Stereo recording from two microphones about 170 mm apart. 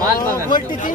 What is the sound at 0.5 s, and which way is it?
Speech, 25° left (ahead or behind).